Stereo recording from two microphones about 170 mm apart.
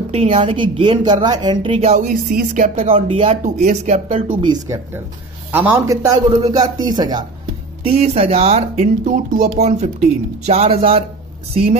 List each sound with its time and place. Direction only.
0.1 s speech: 35° right (ahead or behind); by 2.8 s 55° right (ahead or behind)
2.8 s speech: 35° right (ahead or behind)
3.6 s speech: 45° right (ahead or behind)
4.3 s a man's voice: 25° right (ahead or behind)
5.5 s a man's voice: 15° right (ahead or behind)
7.9 s speech: 40° right (ahead or behind)